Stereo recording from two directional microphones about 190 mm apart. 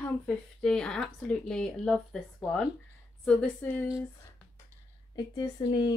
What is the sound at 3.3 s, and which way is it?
Speech, 5° left (ahead or behind).